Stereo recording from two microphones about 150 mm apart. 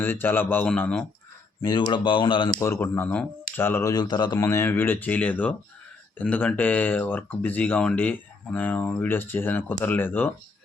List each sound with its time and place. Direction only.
0.0 s speech: 15° left (ahead or behind)
1.8 s speech: 30° left (ahead or behind)
2.6 s speech: 15° left (ahead or behind)